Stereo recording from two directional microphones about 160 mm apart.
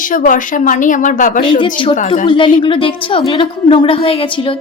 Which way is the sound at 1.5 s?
30° left (ahead or behind).